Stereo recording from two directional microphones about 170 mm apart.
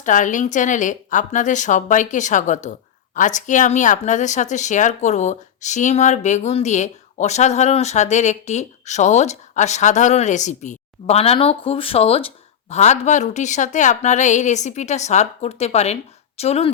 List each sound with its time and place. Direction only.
0.0 s speech: 45° left (ahead or behind)